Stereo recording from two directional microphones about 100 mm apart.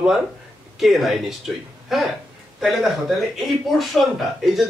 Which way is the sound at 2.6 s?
5° right (ahead or behind).